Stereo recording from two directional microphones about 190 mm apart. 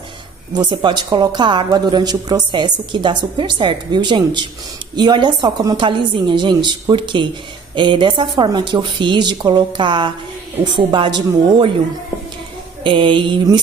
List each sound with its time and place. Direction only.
0.6 s a woman's voice: 25° right (ahead or behind)
12.8 s a woman's voice: 25° right (ahead or behind)